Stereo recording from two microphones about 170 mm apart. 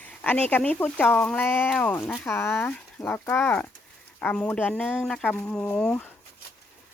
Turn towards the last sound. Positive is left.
turn(degrees=10)  # may be behind; listen again after turning